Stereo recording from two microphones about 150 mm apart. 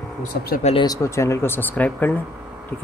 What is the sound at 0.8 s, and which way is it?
Speech, 20° left (ahead or behind).